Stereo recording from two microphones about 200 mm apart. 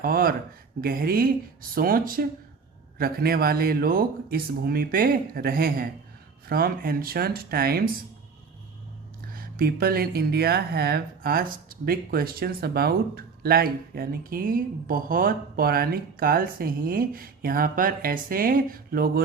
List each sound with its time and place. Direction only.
0.0 s speech: 45° right (ahead or behind)
9.3 s speech: 50° right (ahead or behind)